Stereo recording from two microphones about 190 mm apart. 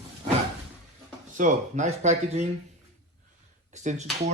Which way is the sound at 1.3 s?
40° right (ahead or behind).